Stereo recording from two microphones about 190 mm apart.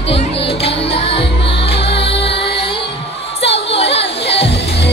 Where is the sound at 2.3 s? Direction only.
60° left (ahead or behind).